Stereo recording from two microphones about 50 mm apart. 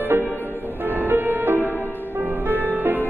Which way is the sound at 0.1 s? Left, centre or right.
Right.